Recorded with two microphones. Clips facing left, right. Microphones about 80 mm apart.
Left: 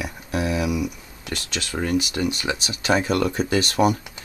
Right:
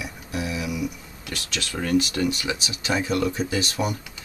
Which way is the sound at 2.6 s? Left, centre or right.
Left.